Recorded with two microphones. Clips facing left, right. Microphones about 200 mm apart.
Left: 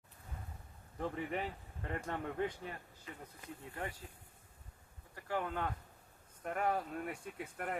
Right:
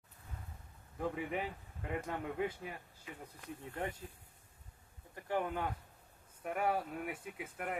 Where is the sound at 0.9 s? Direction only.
5° right (ahead or behind).